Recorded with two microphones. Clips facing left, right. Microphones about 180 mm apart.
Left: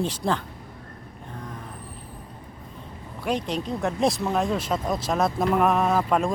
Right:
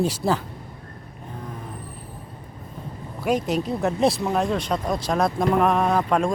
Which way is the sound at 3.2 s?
10° right (ahead or behind).